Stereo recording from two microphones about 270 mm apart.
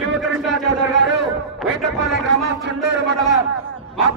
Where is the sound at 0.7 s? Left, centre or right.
Right.